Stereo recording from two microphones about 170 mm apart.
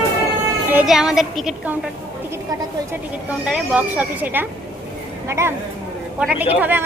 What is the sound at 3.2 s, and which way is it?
Speech, 5° right (ahead or behind).